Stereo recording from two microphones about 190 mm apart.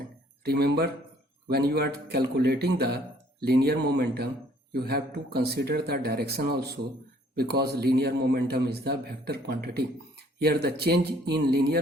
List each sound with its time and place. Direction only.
0.4 s a man's voice: 55° right (ahead or behind)